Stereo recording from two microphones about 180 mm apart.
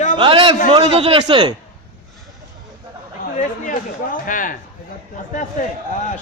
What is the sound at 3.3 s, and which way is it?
A man's voice, 45° left (ahead or behind).